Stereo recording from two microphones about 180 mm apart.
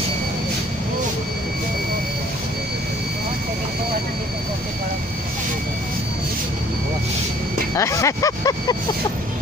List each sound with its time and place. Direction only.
7.7 s speech: 15° left (ahead or behind)